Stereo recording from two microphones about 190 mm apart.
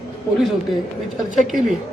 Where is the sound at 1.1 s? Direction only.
Centre (ahead or behind).